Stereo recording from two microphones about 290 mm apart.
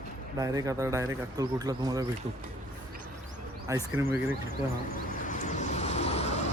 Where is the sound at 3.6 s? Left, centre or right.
Centre.